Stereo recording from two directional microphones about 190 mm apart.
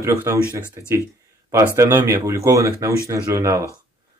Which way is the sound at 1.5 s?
15° right (ahead or behind).